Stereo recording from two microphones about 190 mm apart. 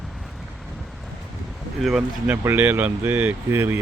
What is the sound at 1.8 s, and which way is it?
Speech, centre (ahead or behind).